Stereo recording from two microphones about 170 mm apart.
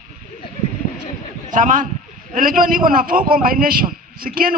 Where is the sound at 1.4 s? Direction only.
50° right (ahead or behind).